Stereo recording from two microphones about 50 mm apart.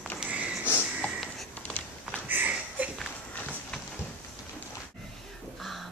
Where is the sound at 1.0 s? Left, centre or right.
Left.